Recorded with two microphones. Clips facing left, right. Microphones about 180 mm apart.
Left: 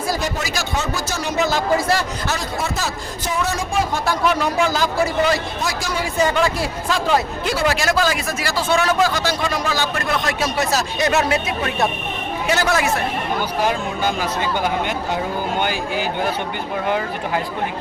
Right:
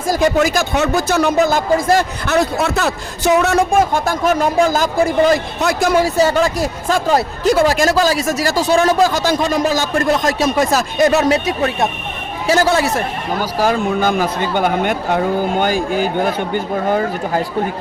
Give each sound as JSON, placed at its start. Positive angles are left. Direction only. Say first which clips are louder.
{"t": 0.1, "sound": "a man's voice", "louder": "right 13 dB", "side_deg": -55}
{"t": 6.1, "sound": "speech", "louder": "right 4 dB", "side_deg": -40}
{"t": 11.1, "sound": "speech", "louder": "right 5 dB", "side_deg": -40}
{"t": 12.6, "sound": "a man's voice", "louder": "right 4 dB", "side_deg": -30}
{"t": 13.6, "sound": "speech", "louder": "right 8 dB", "side_deg": -40}
{"t": 14.1, "sound": "speech", "louder": "right 5 dB", "side_deg": -55}